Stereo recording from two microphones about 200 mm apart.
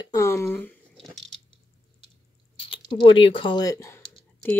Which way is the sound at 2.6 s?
25° left (ahead or behind).